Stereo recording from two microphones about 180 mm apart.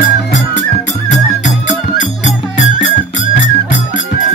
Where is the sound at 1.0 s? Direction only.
40° left (ahead or behind).